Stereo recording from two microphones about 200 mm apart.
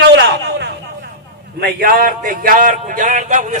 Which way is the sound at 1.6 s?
45° right (ahead or behind).